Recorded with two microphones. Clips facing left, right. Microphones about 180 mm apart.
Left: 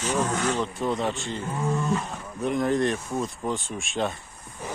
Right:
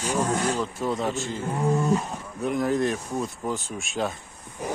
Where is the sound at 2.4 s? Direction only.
5° right (ahead or behind).